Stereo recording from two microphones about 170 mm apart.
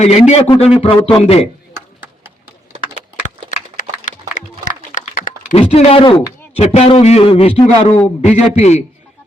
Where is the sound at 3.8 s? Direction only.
50° left (ahead or behind).